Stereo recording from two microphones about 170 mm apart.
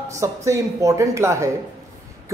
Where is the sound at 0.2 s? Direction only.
20° right (ahead or behind).